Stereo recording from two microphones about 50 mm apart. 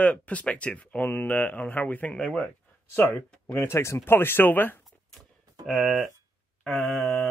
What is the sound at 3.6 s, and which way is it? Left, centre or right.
Speech, left.